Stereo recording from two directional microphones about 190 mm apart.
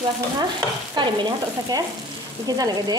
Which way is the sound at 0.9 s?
25° right (ahead or behind).